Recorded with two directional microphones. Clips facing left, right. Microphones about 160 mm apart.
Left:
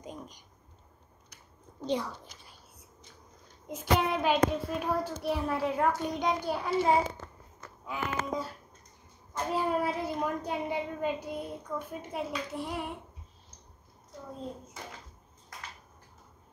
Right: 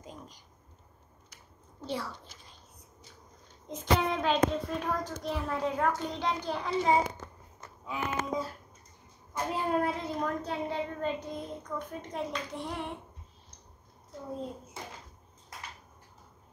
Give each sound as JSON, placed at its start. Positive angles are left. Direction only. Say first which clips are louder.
{"t": 0.0, "sound": "a sound", "louder": "left 4 dB", "side_deg": 20}
{"t": 1.8, "sound": "a child's voice", "louder": "left 4 dB", "side_deg": 15}
{"t": 3.6, "sound": "a child's voice", "louder": "even", "side_deg": 10}
{"t": 7.2, "sound": "a sound", "louder": "right 1 dB", "side_deg": -10}
{"t": 7.8, "sound": "speech", "louder": "even", "side_deg": 0}
{"t": 9.5, "sound": "a child's voice", "louder": "even", "side_deg": 5}